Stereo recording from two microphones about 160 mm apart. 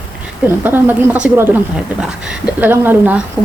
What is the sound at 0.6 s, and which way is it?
Speech, 10° right (ahead or behind).